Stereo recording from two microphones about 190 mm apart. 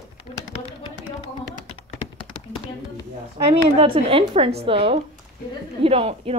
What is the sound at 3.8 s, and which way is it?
A woman's voice, 30° right (ahead or behind).